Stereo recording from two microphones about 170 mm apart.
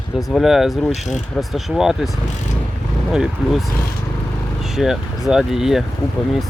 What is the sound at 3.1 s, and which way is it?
Speech, 5° right (ahead or behind).